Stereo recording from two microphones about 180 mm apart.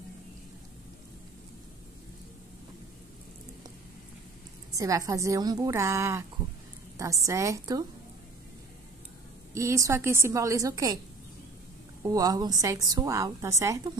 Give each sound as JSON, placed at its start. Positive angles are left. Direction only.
{"t": 4.7, "sound": "a woman's voice", "side_deg": -20}
{"t": 9.5, "sound": "a woman's voice", "side_deg": -15}
{"t": 12.0, "sound": "a woman's voice", "side_deg": -20}